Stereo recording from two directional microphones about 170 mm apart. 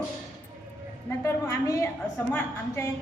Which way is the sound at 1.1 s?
15° left (ahead or behind).